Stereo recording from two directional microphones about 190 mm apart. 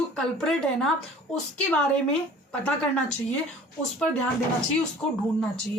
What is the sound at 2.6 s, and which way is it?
Speech, 5° left (ahead or behind).